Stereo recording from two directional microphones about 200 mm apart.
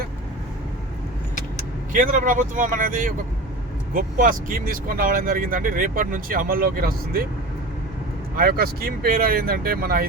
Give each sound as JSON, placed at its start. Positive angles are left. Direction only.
{"t": 1.9, "sound": "speech", "side_deg": -40}
{"t": 8.4, "sound": "speech", "side_deg": -50}